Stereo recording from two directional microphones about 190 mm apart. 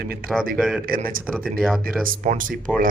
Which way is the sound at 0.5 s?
5° right (ahead or behind).